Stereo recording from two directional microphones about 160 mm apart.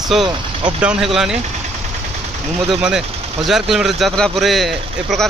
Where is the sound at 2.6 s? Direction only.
Centre (ahead or behind).